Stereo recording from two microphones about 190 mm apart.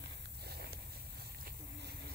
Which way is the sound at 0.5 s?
55° right (ahead or behind).